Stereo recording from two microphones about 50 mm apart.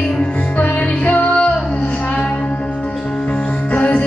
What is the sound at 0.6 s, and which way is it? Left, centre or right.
Music, left.